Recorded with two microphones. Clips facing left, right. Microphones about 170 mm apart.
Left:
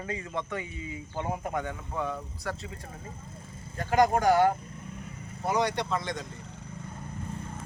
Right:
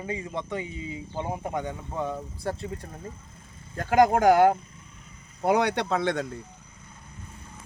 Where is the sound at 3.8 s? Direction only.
50° right (ahead or behind); by 6.2 s 65° right (ahead or behind).